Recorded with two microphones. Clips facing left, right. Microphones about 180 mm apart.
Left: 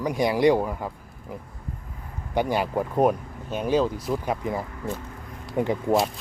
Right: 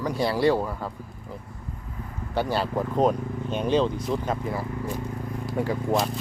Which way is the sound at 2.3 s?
15° left (ahead or behind).